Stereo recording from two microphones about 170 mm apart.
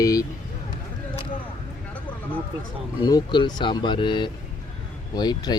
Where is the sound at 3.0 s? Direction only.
25° left (ahead or behind).